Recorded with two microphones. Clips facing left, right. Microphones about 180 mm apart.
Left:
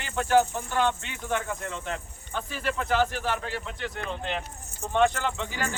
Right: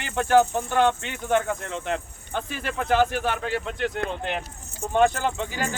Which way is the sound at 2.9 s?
60° right (ahead or behind).